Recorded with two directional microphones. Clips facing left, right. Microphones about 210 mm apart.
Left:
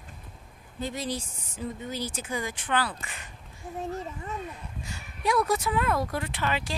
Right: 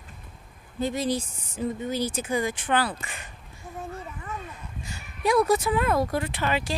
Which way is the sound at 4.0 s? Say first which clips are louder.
Left 1 dB; 25° left (ahead or behind).